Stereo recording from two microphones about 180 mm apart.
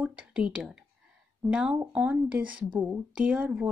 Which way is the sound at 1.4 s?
5° right (ahead or behind).